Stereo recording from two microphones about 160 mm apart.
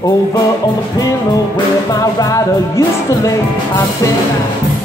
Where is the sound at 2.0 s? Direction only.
20° left (ahead or behind).